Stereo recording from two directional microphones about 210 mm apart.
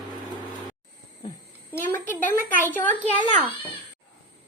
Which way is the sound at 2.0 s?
40° left (ahead or behind).